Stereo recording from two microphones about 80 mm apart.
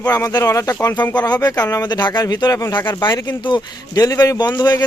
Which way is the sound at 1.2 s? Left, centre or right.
Left.